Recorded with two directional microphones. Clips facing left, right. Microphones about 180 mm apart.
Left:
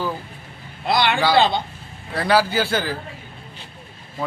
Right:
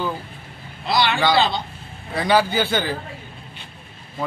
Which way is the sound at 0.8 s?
55° left (ahead or behind).